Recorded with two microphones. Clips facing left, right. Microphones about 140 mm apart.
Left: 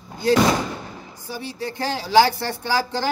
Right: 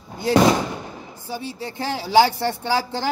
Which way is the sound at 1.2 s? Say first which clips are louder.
Even; 20° right (ahead or behind).